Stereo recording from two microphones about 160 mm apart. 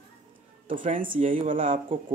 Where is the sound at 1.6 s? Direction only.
35° right (ahead or behind).